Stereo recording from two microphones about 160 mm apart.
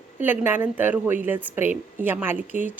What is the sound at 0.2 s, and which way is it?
A woman's voice, 10° right (ahead or behind).